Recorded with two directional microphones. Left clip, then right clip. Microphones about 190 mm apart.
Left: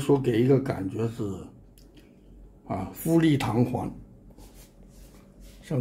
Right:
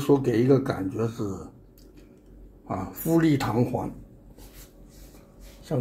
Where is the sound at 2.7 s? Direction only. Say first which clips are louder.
Right 1 dB; 15° left (ahead or behind).